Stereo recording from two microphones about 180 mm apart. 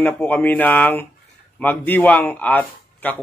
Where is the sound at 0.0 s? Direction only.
10° left (ahead or behind).